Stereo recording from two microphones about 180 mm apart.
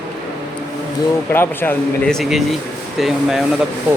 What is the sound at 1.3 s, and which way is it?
Speech, 10° left (ahead or behind).